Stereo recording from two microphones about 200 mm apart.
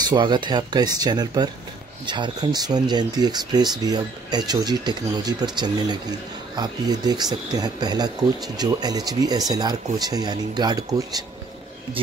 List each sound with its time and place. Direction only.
0.0 s speech: 20° right (ahead or behind)